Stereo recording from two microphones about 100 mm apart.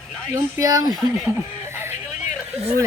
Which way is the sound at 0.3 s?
35° right (ahead or behind).